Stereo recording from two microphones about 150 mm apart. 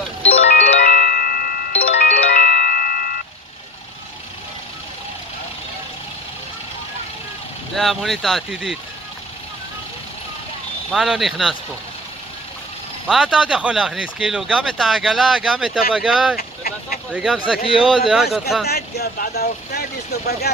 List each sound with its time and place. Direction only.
0.2 s music: 45° left (ahead or behind)
0.8 s glockenspiel: 75° left (ahead or behind)
2.0 s music: 75° left (ahead or behind)
7.7 s speech: centre (ahead or behind)
10.9 s speech: 5° right (ahead or behind)
13.0 s speech: 5° right (ahead or behind)
16.3 s vehicle: 90° left
17.1 s speech: 5° right (ahead or behind)
18.7 s speech: 90° left